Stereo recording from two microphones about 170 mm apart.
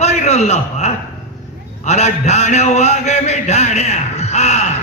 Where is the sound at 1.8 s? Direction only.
40° left (ahead or behind).